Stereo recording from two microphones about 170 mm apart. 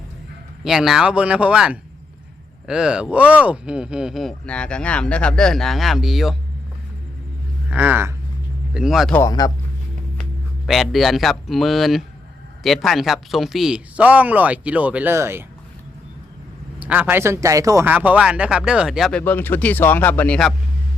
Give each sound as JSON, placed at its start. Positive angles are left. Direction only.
{"t": 0.6, "sound": "speech", "side_deg": 0}
{"t": 7.7, "sound": "speech", "side_deg": -10}
{"t": 9.1, "sound": "speech", "side_deg": 20}
{"t": 10.7, "sound": "speech", "side_deg": 0}
{"t": 16.8, "sound": "speech", "side_deg": -10}
{"t": 19.2, "sound": "speech", "side_deg": 10}